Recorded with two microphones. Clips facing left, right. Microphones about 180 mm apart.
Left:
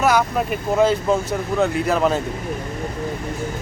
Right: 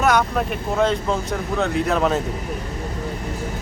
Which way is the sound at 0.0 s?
5° left (ahead or behind).